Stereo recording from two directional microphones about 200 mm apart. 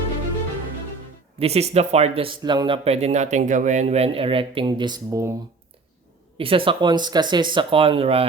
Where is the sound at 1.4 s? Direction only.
30° right (ahead or behind); by 5.4 s 15° right (ahead or behind).